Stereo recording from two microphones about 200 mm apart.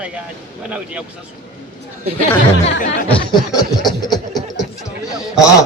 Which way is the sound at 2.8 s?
40° left (ahead or behind).